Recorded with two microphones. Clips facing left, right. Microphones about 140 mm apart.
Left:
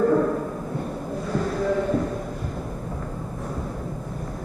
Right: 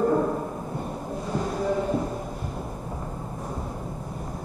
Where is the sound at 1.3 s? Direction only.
10° right (ahead or behind).